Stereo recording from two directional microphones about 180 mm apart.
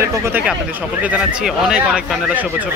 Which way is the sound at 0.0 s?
15° right (ahead or behind).